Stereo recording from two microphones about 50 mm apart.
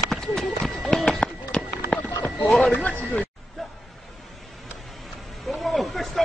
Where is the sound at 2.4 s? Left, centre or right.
Centre.